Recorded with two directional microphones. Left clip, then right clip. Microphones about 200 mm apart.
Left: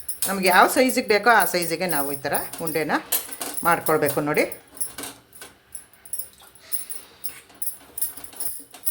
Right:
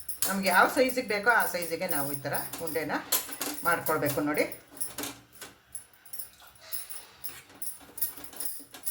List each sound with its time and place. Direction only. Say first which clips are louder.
0.4 s speech: left 7 dB; 55° left (ahead or behind)